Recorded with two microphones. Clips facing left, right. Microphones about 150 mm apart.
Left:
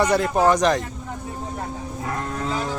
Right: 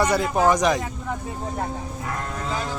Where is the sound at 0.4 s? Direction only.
10° right (ahead or behind).